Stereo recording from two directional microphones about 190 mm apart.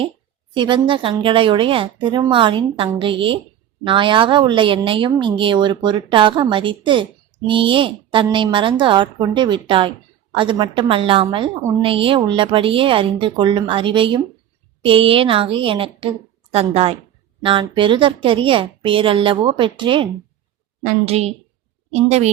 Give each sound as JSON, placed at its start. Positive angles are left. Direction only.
{"t": 0.5, "sound": "a woman's voice", "side_deg": -25}